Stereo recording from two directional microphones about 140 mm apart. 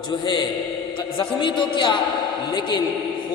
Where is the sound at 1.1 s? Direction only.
35° left (ahead or behind).